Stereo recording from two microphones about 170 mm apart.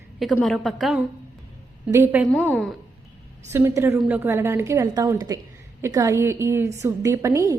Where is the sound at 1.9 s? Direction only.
15° right (ahead or behind).